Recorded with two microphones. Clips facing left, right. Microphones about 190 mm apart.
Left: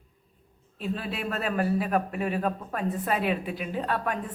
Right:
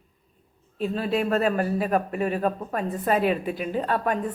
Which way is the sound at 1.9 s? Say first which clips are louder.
Right 3 dB; 5° left (ahead or behind).